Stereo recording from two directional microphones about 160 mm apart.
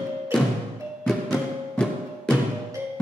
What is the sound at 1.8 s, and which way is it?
Music, 5° left (ahead or behind).